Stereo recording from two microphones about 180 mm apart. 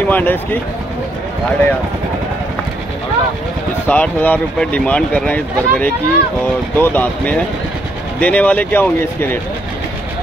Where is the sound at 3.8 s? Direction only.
10° left (ahead or behind).